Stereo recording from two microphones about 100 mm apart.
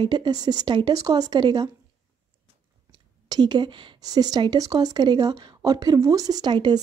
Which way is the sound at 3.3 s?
45° right (ahead or behind).